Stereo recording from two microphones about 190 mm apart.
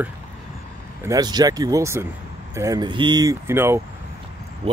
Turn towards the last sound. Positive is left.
turn(degrees=-30)  # may be behind; listen again after turning